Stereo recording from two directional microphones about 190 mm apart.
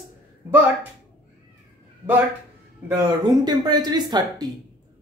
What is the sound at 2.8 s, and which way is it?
Speech, 20° right (ahead or behind).